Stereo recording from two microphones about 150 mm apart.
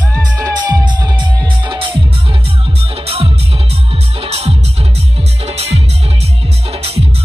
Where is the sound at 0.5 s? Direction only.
30° right (ahead or behind).